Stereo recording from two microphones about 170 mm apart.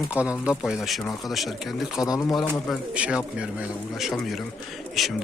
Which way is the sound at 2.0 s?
20° left (ahead or behind).